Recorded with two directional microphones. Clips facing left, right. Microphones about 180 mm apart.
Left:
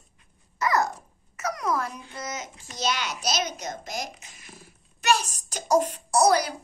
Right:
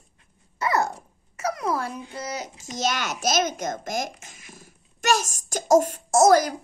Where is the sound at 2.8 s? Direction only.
45° right (ahead or behind).